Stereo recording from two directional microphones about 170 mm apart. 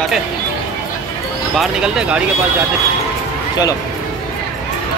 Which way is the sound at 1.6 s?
5° right (ahead or behind).